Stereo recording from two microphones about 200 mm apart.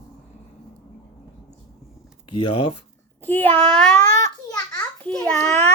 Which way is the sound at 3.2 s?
10° left (ahead or behind).